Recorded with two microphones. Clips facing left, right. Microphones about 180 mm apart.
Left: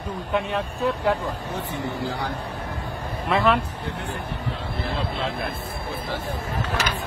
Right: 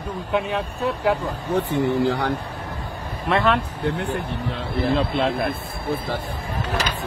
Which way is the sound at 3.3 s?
Centre (ahead or behind).